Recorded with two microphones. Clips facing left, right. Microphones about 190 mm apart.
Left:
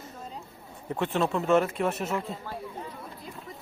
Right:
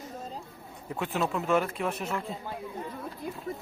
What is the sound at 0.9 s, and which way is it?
Speech, 5° right (ahead or behind).